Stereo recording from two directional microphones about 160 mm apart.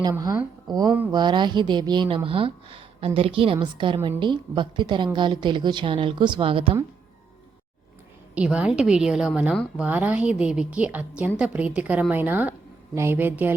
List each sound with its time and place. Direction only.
0.0 s a woman's voice: 25° right (ahead or behind)
8.4 s a woman's voice: 5° right (ahead or behind)